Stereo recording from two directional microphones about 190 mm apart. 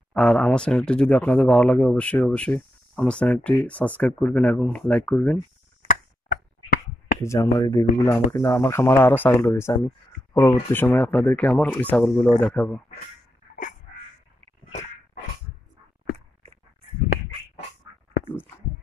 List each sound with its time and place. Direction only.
0.1 s speech: 5° left (ahead or behind)
5.9 s tick-tock: 45° left (ahead or behind)
7.2 s speech: 15° left (ahead or behind)